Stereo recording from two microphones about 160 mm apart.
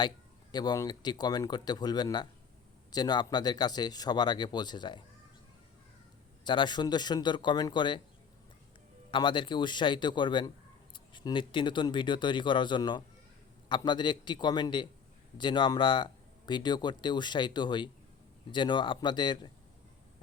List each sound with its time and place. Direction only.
0.5 s speech: 25° left (ahead or behind)
6.4 s speech: 30° left (ahead or behind)
9.1 s speech: 30° left (ahead or behind)